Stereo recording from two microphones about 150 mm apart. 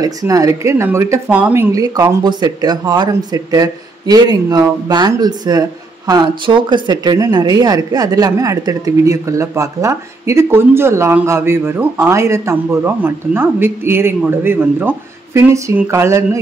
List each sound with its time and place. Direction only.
0.0 s speech: 20° right (ahead or behind)